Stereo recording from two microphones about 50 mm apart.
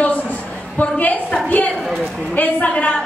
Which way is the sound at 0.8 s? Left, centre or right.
Left.